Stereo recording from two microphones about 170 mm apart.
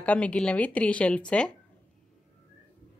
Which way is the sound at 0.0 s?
10° left (ahead or behind).